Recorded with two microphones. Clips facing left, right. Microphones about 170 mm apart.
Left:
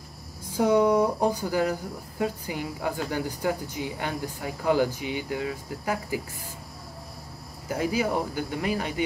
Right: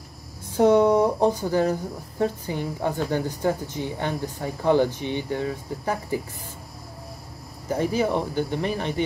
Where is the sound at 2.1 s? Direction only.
10° left (ahead or behind).